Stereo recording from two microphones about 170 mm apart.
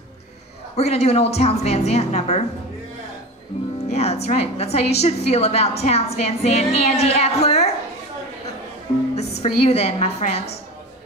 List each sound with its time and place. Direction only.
0.7 s a woman's voice: 40° left (ahead or behind)
3.9 s a woman's voice: 40° left (ahead or behind)
9.1 s a woman's voice: 40° left (ahead or behind)